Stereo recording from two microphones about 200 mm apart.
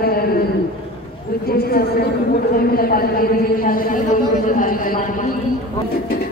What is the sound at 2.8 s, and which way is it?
A man's voice, 45° left (ahead or behind).